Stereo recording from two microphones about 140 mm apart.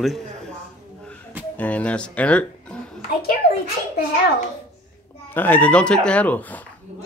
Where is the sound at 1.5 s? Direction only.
10° left (ahead or behind).